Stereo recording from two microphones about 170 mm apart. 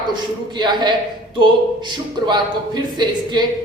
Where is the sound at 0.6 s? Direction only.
25° right (ahead or behind).